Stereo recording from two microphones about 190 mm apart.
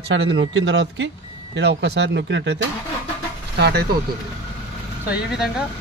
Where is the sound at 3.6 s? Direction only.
55° right (ahead or behind).